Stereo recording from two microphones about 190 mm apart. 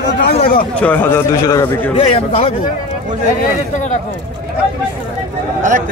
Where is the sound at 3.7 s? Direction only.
40° left (ahead or behind).